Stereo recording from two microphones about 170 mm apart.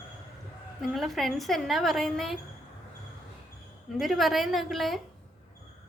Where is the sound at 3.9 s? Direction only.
Centre (ahead or behind).